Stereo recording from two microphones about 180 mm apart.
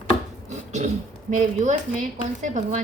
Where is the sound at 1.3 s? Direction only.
40° right (ahead or behind).